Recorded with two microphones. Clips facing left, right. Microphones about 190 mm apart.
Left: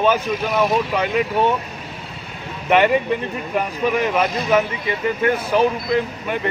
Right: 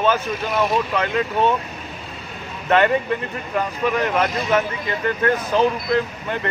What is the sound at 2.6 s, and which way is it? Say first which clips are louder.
Speech: left 1 dB; 15° left (ahead or behind).